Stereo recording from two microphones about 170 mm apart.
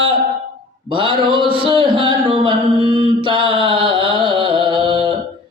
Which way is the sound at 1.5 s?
30° right (ahead or behind).